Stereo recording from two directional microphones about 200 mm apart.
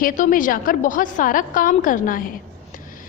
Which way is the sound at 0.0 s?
45° left (ahead or behind).